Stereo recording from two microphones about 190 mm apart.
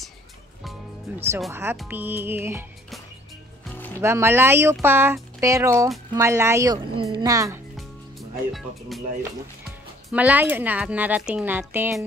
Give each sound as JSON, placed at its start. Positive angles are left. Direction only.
{"t": 0.7, "sound": "music", "side_deg": -10}
{"t": 1.5, "sound": "speech", "side_deg": -10}
{"t": 4.0, "sound": "speech", "side_deg": -15}
{"t": 7.7, "sound": "music", "side_deg": 0}
{"t": 9.7, "sound": "speech", "side_deg": -5}